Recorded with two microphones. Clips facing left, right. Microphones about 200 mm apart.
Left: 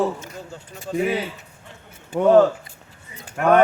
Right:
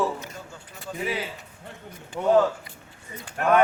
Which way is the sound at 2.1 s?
60° left (ahead or behind).